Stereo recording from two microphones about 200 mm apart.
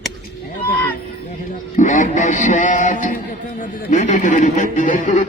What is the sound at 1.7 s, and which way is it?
A man's voice, 40° left (ahead or behind).